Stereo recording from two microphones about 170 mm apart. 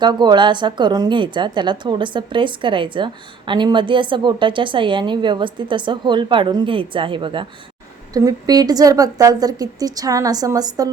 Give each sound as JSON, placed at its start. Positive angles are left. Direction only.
{"t": 0.0, "sound": "a woman's voice", "side_deg": -25}